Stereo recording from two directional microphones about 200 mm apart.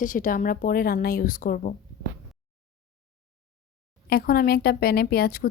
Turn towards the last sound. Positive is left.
turn(degrees=50)  # may be behind; listen again after turning